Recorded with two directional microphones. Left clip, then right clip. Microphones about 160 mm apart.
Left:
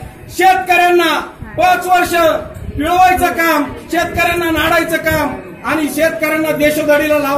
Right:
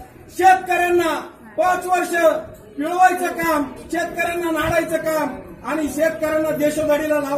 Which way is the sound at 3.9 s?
10° left (ahead or behind).